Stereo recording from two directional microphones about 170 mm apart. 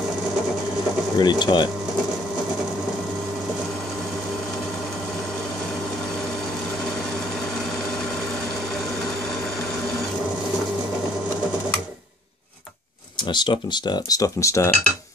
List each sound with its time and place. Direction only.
1.1 s speech: 25° left (ahead or behind)
13.3 s speech: 25° left (ahead or behind)